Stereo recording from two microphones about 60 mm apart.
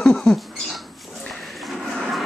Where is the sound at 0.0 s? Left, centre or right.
Centre.